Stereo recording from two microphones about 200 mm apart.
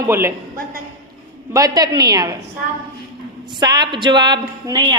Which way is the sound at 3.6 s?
20° right (ahead or behind).